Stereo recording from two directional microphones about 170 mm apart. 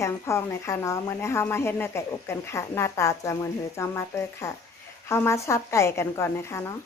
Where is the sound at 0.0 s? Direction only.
15° left (ahead or behind).